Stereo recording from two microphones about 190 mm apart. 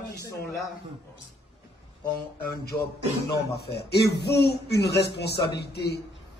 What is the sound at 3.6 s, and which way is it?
A man's voice, 60° left (ahead or behind).